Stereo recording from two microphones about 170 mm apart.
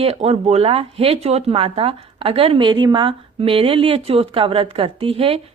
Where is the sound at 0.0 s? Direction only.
35° right (ahead or behind).